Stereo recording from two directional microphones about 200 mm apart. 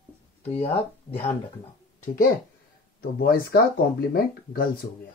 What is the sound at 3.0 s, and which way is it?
Speech, 50° left (ahead or behind).